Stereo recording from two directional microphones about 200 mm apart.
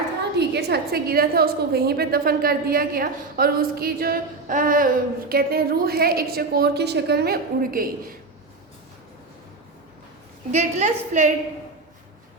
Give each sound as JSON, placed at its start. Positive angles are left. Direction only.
{"t": 0.3, "sound": "a woman's voice", "side_deg": -55}
{"t": 10.5, "sound": "a woman's voice", "side_deg": -35}